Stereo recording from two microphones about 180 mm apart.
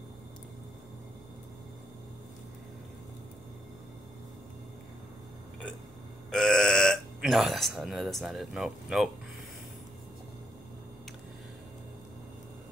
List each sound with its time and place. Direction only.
6.3 s speech: 5° left (ahead or behind)